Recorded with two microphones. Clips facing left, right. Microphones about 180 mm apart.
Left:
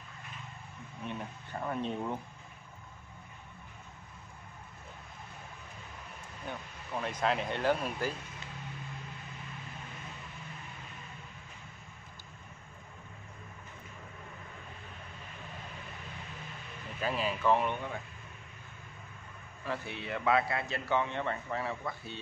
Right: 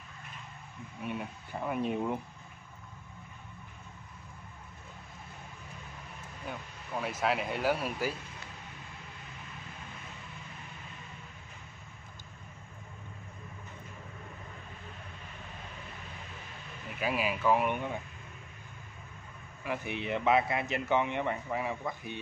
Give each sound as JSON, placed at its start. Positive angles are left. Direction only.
{"t": 1.0, "sound": "a man's voice", "side_deg": -10}
{"t": 6.5, "sound": "speech", "side_deg": -5}
{"t": 17.0, "sound": "a man's voice", "side_deg": -10}
{"t": 19.6, "sound": "a man's voice", "side_deg": -15}